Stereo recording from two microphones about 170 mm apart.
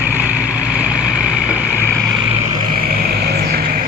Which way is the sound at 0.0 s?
10° right (ahead or behind).